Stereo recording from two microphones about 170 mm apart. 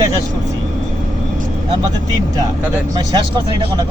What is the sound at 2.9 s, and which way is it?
Speech, 25° right (ahead or behind).